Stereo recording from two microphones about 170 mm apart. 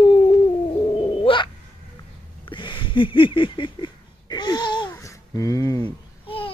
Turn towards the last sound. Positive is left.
turn(degrees=30)  # may be behind; listen again after turning